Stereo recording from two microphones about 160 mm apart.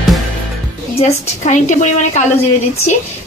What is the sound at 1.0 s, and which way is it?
A woman's voice, 45° left (ahead or behind).